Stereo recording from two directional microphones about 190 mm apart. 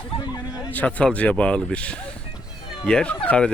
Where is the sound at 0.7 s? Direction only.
10° left (ahead or behind).